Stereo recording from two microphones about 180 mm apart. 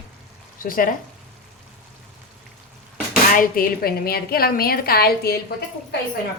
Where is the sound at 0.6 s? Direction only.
50° left (ahead or behind).